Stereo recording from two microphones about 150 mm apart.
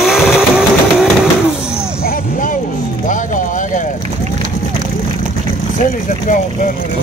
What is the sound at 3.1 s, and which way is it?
Music, 60° left (ahead or behind).